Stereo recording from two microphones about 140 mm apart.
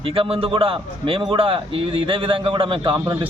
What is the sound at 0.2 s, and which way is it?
A man's voice, 40° right (ahead or behind).